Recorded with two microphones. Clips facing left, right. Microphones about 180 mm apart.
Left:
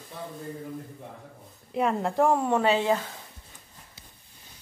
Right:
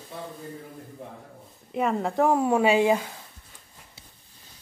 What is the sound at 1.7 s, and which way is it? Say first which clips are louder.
A woman's voice: even; centre (ahead or behind).